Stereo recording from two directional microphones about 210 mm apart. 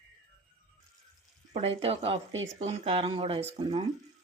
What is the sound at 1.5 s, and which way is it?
Speech, 30° right (ahead or behind).